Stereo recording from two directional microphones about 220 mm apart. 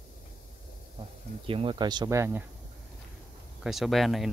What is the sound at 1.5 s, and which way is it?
Speech, 25° right (ahead or behind).